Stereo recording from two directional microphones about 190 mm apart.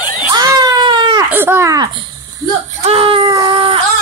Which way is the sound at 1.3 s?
10° right (ahead or behind).